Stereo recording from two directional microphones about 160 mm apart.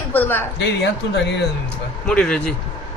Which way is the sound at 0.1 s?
10° left (ahead or behind).